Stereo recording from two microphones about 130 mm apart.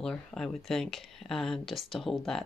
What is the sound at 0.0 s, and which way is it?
Speech, 5° left (ahead or behind).